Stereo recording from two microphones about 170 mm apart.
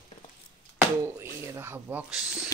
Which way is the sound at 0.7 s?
15° right (ahead or behind).